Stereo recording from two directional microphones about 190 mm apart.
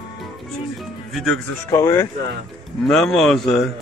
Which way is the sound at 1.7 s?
20° left (ahead or behind).